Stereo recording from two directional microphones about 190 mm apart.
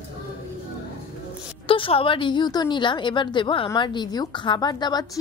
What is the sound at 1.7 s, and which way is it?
A woman's voice, 30° left (ahead or behind).